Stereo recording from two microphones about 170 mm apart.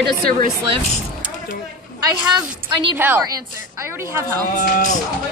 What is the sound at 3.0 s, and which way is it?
A woman's voice, 10° right (ahead or behind).